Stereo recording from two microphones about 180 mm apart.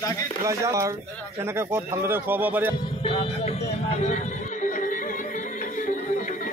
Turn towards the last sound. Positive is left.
turn(degrees=45)  # may be behind; listen again after turning